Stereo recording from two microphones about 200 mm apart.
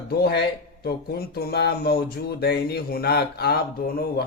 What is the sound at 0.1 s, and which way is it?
Speech, 50° left (ahead or behind).